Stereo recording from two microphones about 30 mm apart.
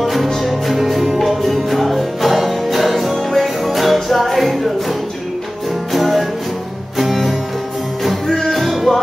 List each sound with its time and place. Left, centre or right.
0.0 s music: centre
5.9 s music: centre
8.3 s music: centre
8.5 s music: centre